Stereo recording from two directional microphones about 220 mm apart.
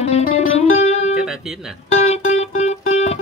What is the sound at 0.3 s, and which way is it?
Music, 30° left (ahead or behind).